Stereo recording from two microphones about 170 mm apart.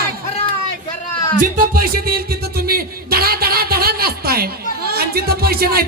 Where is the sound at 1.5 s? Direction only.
60° right (ahead or behind).